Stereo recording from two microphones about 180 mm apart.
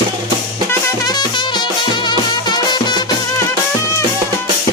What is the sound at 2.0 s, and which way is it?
Music, 25° left (ahead or behind).